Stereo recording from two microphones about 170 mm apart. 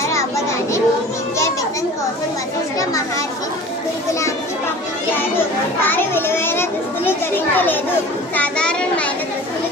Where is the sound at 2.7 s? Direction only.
20° left (ahead or behind).